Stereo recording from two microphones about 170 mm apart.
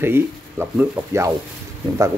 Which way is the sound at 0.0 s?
15° right (ahead or behind).